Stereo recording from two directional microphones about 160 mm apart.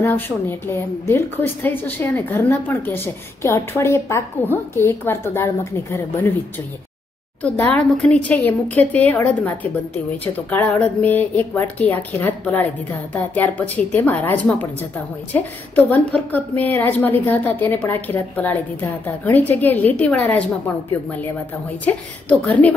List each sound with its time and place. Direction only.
0.0 s a woman's voice: 15° left (ahead or behind)
7.4 s a woman's voice: 10° left (ahead or behind)
21.8 s a woman's voice: 10° left (ahead or behind)